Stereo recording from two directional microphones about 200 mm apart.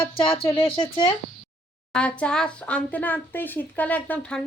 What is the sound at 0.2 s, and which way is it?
Speech, 25° left (ahead or behind).